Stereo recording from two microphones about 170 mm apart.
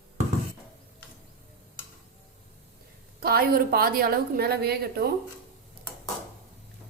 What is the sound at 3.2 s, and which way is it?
A woman's voice, 60° right (ahead or behind).